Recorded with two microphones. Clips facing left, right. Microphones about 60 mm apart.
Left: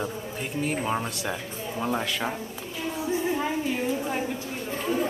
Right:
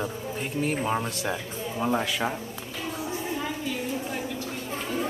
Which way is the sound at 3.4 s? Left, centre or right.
Left.